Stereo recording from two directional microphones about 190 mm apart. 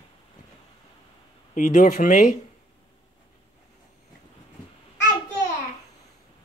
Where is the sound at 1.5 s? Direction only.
40° left (ahead or behind).